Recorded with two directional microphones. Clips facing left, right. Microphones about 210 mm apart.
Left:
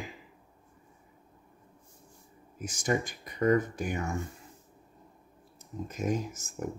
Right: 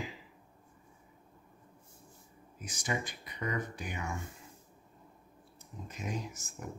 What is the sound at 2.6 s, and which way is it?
Speech, 45° left (ahead or behind).